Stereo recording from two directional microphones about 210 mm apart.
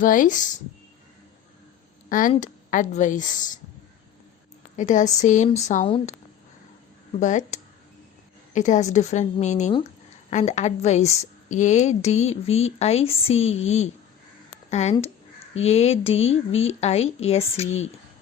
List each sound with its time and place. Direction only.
0.0 s a woman's voice: 40° left (ahead or behind)
2.0 s a woman's voice: 40° left (ahead or behind)
4.8 s a woman's voice: 35° left (ahead or behind)
7.2 s a woman's voice: 35° left (ahead or behind)